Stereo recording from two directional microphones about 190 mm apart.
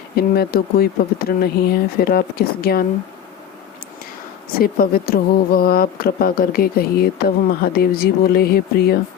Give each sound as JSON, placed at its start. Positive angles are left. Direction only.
{"t": 0.2, "sound": "a woman's voice", "side_deg": 55}
{"t": 4.5, "sound": "a woman's voice", "side_deg": 50}